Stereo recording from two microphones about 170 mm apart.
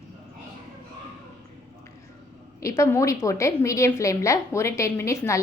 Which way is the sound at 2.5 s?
20° left (ahead or behind).